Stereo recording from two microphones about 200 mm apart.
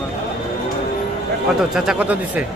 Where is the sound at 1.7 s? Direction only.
5° right (ahead or behind).